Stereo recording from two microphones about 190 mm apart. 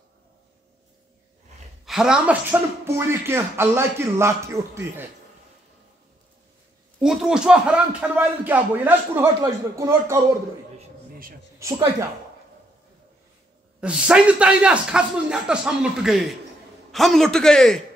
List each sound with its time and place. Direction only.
1.9 s speech: 5° right (ahead or behind)
7.0 s speech: 5° right (ahead or behind)
11.6 s speech: 15° right (ahead or behind)
13.7 s a man's voice: 5° right (ahead or behind)